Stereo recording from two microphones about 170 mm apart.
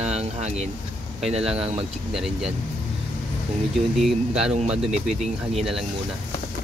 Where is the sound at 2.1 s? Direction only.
Centre (ahead or behind).